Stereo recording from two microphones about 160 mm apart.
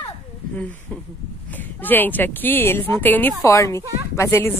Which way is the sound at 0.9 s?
5° left (ahead or behind).